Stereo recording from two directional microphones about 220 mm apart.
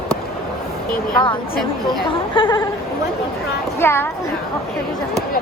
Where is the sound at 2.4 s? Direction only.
20° left (ahead or behind).